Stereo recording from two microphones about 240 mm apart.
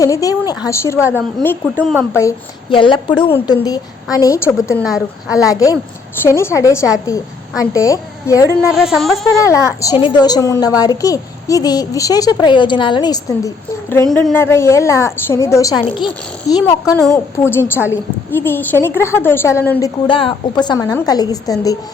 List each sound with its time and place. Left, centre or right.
0.0 s a woman's voice: centre
2.1 s a woman's voice: centre
4.8 s speech: centre
5.3 s a woman's voice: centre
8.7 s speech: centre
9.5 s a woman's voice: centre
13.9 s a woman's voice: centre
20.1 s a woman's voice: left